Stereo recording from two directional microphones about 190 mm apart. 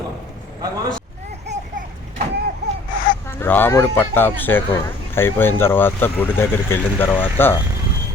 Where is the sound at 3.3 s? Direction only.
10° left (ahead or behind).